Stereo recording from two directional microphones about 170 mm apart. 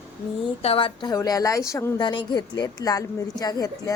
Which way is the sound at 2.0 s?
25° left (ahead or behind).